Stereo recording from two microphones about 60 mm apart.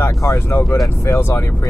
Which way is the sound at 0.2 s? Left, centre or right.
Left.